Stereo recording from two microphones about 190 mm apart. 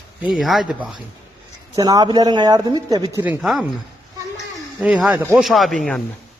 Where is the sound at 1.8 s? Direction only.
20° right (ahead or behind).